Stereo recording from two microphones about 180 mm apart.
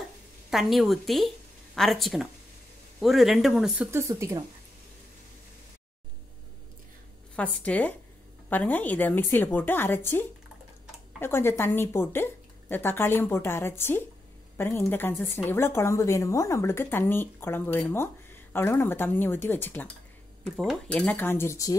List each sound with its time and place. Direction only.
0.5 s a woman's voice: centre (ahead or behind); by 4.5 s 20° right (ahead or behind)
7.3 s speech: 10° left (ahead or behind)